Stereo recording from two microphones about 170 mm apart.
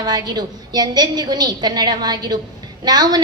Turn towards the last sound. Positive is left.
turn(degrees=-25)  # may be behind; listen again after turning